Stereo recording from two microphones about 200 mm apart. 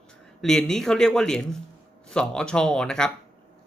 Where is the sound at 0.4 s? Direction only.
5° left (ahead or behind).